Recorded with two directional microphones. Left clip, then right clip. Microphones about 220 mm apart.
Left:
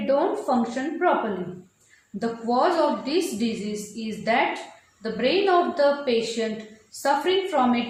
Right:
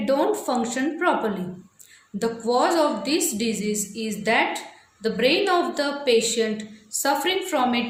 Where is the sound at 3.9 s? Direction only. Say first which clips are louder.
Right 1 dB; 50° right (ahead or behind).